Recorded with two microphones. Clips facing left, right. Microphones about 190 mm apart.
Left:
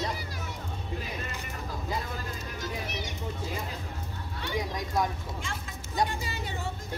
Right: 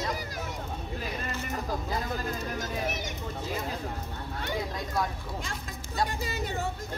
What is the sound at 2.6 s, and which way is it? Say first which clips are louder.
Speech: right 3 dB; 45° right (ahead or behind).